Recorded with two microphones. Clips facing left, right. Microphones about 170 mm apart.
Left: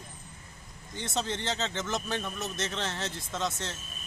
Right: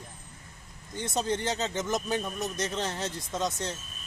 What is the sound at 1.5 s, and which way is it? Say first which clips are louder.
Speech: right 3 dB; 15° right (ahead or behind).